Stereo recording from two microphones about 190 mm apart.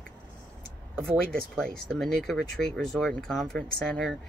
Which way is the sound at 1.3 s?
50° right (ahead or behind).